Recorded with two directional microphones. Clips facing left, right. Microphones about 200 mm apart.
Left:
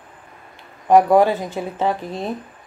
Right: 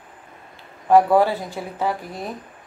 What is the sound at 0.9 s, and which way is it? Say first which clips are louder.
Speech: left 2 dB; 15° left (ahead or behind).